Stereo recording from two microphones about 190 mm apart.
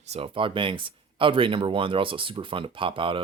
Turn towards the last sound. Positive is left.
turn(degrees=-25)  # may be behind; listen again after turning